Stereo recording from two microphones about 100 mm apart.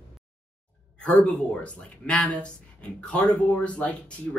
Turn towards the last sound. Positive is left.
turn(degrees=10)  # may be behind; listen again after turning